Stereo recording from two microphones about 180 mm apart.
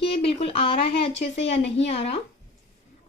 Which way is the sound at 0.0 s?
30° left (ahead or behind).